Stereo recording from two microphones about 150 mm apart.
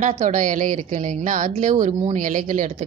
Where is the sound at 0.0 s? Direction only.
55° right (ahead or behind).